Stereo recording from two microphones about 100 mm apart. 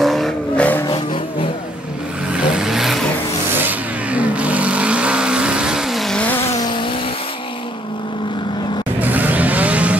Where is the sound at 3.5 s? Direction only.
15° right (ahead or behind).